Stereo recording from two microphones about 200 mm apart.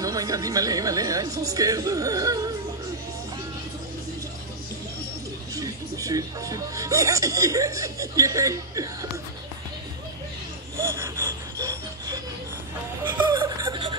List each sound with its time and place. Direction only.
0.0 s speech: 20° right (ahead or behind)
5.5 s speech: 15° right (ahead or behind)
10.8 s a sound: 15° right (ahead or behind)
13.0 s chuckle: 25° right (ahead or behind)